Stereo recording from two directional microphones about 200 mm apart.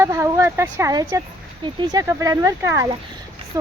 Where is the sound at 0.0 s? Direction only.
15° right (ahead or behind).